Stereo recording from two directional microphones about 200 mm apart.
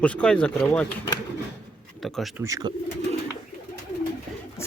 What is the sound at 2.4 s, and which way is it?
Speech, 15° right (ahead or behind).